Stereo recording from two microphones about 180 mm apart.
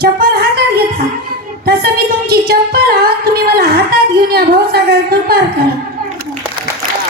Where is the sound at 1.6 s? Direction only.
60° right (ahead or behind).